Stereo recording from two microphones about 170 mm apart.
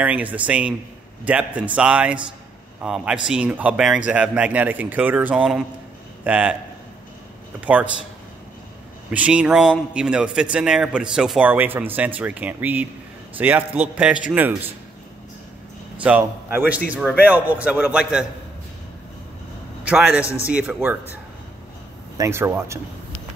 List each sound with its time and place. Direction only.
0.0 s a man's voice: 10° right (ahead or behind)
7.6 s a man's voice: 10° right (ahead or behind)
9.1 s a man's voice: 5° right (ahead or behind)
16.0 s a man's voice: 10° right (ahead or behind)
20.4 s a man's voice: 10° right (ahead or behind)
22.1 s a man's voice: 15° right (ahead or behind)